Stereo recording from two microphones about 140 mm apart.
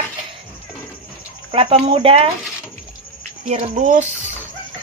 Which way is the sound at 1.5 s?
45° right (ahead or behind).